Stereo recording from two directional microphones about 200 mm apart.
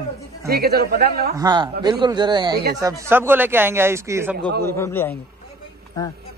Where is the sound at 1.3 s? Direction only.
20° right (ahead or behind).